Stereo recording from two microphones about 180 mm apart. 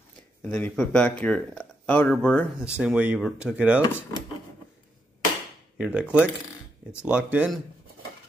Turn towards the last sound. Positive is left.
turn(degrees=-5)  # may be behind; listen again after turning